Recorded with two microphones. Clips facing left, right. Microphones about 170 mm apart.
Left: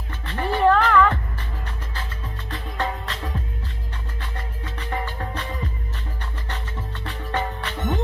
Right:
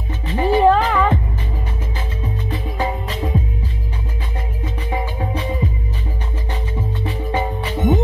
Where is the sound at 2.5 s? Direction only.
15° right (ahead or behind).